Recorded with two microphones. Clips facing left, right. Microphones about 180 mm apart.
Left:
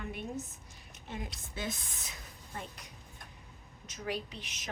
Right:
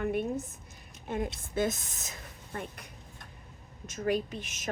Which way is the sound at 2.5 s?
55° right (ahead or behind).